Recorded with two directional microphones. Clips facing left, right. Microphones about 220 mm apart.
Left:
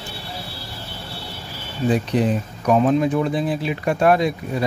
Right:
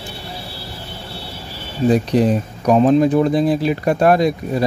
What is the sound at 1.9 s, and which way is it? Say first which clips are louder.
Speech: right 4 dB; 40° right (ahead or behind).